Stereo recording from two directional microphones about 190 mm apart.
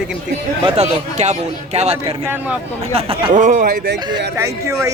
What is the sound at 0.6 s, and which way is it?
Speech, 35° right (ahead or behind).